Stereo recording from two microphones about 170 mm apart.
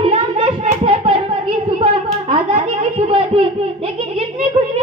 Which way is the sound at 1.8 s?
30° right (ahead or behind).